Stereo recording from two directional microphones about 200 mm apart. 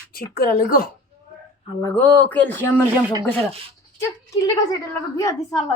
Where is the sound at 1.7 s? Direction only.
15° left (ahead or behind).